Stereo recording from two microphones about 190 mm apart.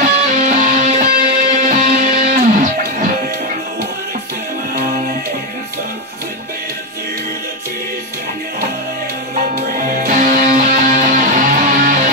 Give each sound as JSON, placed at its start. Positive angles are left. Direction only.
{"t": 0.0, "sound": "music", "side_deg": -40}
{"t": 9.8, "sound": "music", "side_deg": -45}